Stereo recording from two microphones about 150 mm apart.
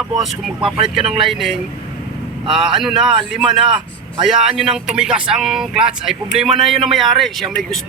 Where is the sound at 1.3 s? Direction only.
Centre (ahead or behind).